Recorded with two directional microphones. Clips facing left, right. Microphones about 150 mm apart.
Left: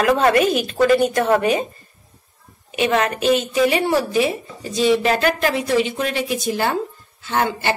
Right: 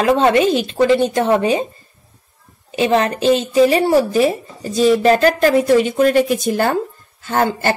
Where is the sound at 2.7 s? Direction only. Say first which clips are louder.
Right 3 dB; 30° right (ahead or behind).